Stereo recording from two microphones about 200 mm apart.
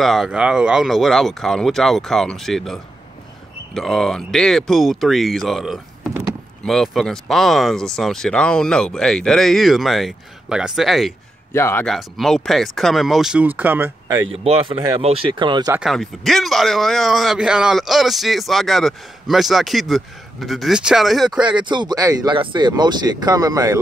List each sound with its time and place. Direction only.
0.0 s a man's voice: centre (ahead or behind)
11.5 s speech: 15° left (ahead or behind)
11.8 s a man's voice: centre (ahead or behind)
14.3 s speech: 30° right (ahead or behind)
15.8 s a man's voice: centre (ahead or behind)
21.5 s speech: 25° right (ahead or behind)